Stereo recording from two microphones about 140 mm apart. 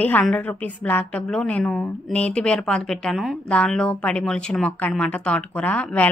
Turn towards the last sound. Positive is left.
turn(degrees=10)  # may be behind; listen again after turning